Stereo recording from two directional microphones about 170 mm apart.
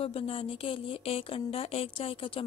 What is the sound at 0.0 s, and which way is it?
Speech, 35° left (ahead or behind).